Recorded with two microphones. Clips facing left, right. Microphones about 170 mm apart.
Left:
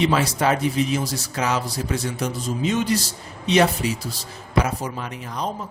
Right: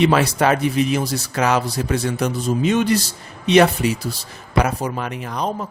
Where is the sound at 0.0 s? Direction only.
65° right (ahead or behind).